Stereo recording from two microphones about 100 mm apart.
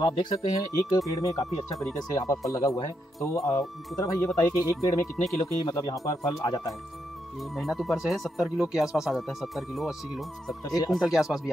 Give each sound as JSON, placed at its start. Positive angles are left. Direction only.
{"t": 0.0, "sound": "speech", "side_deg": 50}
{"t": 0.6, "sound": "speech", "side_deg": 35}
{"t": 7.5, "sound": "speech", "side_deg": 0}